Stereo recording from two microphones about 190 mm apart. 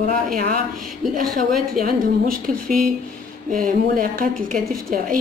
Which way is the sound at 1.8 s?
50° right (ahead or behind).